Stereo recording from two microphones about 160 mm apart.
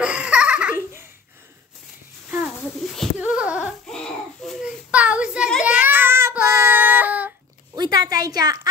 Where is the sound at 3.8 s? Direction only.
5° left (ahead or behind).